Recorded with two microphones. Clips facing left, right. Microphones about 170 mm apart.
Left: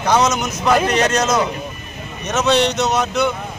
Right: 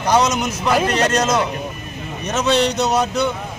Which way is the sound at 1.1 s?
30° right (ahead or behind).